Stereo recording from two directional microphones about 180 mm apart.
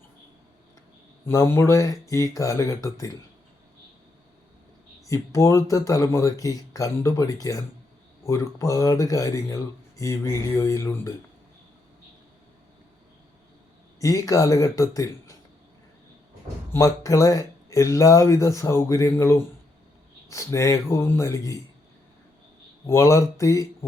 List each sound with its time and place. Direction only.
1.2 s speech: 15° left (ahead or behind)
5.0 s speech: 15° left (ahead or behind)
14.0 s speech: 20° left (ahead or behind)
16.7 s speech: 20° left (ahead or behind)
22.9 s speech: 15° left (ahead or behind)